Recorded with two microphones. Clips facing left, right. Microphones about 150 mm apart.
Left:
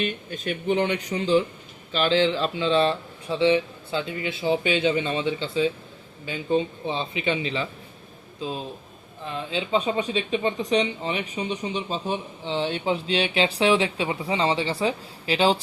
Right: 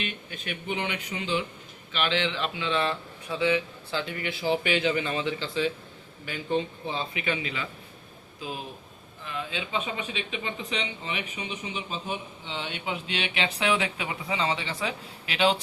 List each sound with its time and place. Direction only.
0.0 s speech: 40° left (ahead or behind)